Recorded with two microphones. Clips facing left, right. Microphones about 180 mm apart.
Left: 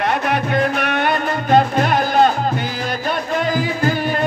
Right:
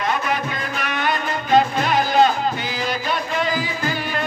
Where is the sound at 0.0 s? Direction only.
60° left (ahead or behind).